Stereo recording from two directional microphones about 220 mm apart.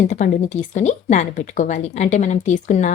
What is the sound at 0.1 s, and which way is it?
Speech, 35° left (ahead or behind).